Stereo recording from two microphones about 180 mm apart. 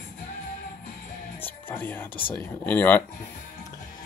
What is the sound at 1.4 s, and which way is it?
Music, 10° left (ahead or behind).